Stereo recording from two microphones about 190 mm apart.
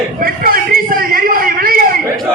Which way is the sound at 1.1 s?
50° right (ahead or behind).